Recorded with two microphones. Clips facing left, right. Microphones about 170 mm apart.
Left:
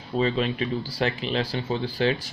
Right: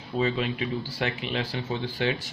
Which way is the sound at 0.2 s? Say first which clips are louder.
Left 2 dB; 35° left (ahead or behind).